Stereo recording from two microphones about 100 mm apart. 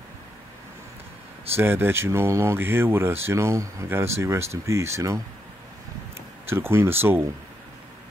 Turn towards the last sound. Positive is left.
turn(degrees=-20)  # may be behind; listen again after turning